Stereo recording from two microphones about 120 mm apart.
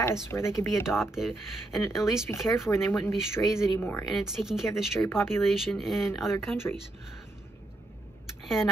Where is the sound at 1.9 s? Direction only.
25° left (ahead or behind).